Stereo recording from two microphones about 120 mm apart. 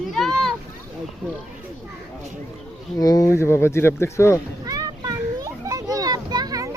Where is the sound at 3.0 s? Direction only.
30° left (ahead or behind).